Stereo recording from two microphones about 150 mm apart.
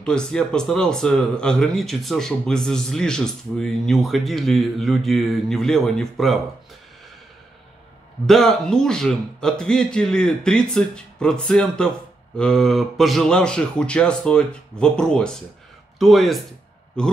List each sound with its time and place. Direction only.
0.0 s speech: 5° left (ahead or behind)
8.3 s speech: 5° left (ahead or behind)